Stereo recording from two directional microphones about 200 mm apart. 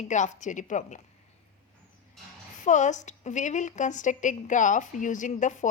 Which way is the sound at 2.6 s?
40° left (ahead or behind).